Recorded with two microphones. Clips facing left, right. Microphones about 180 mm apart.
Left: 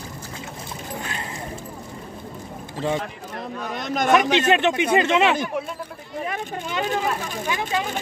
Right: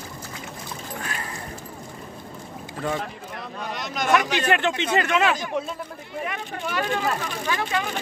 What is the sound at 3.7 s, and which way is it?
Speech, 50° left (ahead or behind).